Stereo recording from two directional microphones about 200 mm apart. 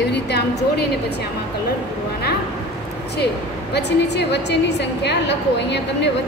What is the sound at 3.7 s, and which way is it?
A woman's voice, 55° left (ahead or behind).